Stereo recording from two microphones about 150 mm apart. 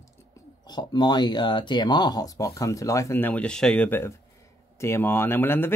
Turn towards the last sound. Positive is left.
turn(degrees=15)  # may be behind; listen again after turning